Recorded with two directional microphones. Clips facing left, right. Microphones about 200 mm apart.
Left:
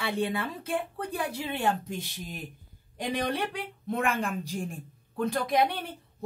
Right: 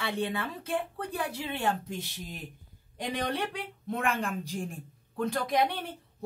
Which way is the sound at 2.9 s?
10° left (ahead or behind).